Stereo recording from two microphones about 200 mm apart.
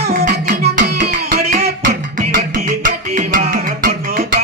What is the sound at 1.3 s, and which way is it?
Music, 30° right (ahead or behind).